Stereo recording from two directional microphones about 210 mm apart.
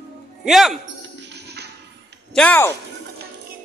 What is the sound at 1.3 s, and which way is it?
Music, 50° right (ahead or behind).